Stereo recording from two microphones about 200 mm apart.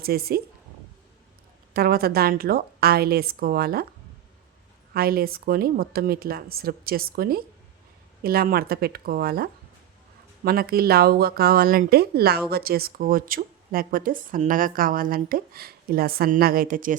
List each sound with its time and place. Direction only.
0.0 s speech: 50° right (ahead or behind)
1.7 s speech: 50° right (ahead or behind)
4.9 s speech: 50° right (ahead or behind)